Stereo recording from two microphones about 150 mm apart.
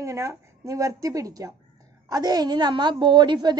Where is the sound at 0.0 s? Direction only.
20° right (ahead or behind).